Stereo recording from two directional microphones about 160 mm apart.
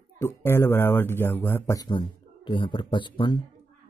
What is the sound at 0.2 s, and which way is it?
Speech, 15° left (ahead or behind).